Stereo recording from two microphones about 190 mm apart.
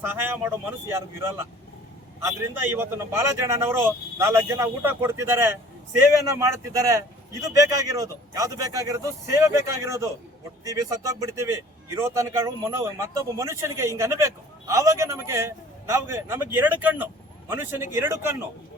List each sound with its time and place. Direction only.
0.0 s speech: 10° right (ahead or behind)
2.6 s speech: 10° right (ahead or behind)